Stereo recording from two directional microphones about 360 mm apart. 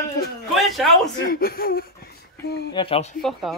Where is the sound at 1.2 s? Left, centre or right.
Left.